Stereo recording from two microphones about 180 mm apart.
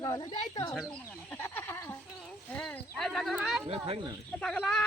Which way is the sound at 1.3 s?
10° left (ahead or behind).